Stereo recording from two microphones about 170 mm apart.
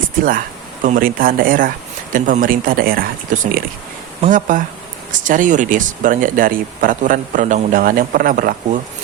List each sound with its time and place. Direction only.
0.8 s speech: 55° right (ahead or behind)